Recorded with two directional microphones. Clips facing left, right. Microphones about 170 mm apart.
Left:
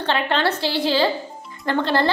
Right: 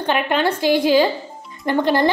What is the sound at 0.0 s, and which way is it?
A woman's voice, 15° right (ahead or behind).